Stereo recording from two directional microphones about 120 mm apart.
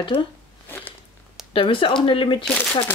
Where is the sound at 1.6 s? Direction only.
45° left (ahead or behind).